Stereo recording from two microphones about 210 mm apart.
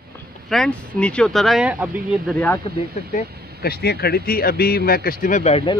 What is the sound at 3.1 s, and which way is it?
Speech, 50° left (ahead or behind).